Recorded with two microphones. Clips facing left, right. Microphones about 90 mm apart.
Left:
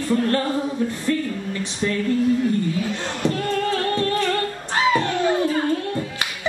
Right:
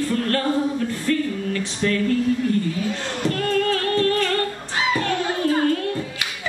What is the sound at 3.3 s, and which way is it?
Music, 20° left (ahead or behind).